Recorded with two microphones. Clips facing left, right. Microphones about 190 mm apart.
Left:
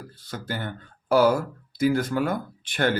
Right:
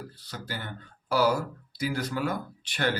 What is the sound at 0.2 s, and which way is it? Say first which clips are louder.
Speech: left 8 dB; 50° left (ahead or behind).